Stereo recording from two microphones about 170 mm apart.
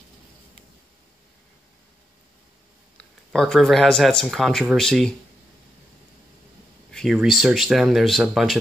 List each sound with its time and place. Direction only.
3.3 s speech: centre (ahead or behind)
6.9 s speech: centre (ahead or behind)